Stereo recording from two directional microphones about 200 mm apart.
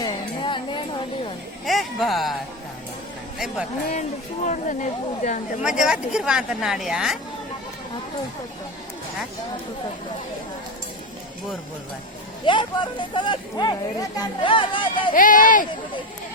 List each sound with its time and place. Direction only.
0.0 s a sound: 25° left (ahead or behind)
1.6 s speech: centre (ahead or behind)
3.3 s speech: centre (ahead or behind)
4.4 s speech: 40° left (ahead or behind)
5.6 s speech: 5° right (ahead or behind)
12.5 s speech: 25° left (ahead or behind)
15.1 s speech: 40° left (ahead or behind)